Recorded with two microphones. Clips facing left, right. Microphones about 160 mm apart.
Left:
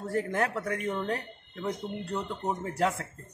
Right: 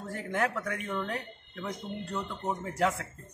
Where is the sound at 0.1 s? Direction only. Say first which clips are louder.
Left 2 dB; 35° left (ahead or behind).